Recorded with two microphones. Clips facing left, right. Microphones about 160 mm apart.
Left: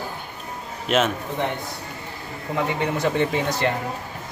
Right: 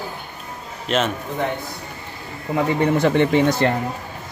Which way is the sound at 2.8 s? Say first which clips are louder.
Right 6 dB; 60° right (ahead or behind).